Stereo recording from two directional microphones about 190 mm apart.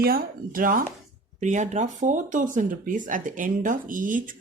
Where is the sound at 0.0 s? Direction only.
50° right (ahead or behind).